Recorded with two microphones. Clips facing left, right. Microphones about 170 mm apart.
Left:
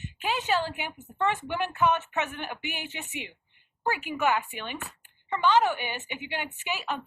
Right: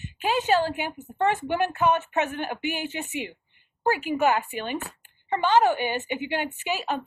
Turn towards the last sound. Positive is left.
turn(degrees=-40)  # may be behind; listen again after turning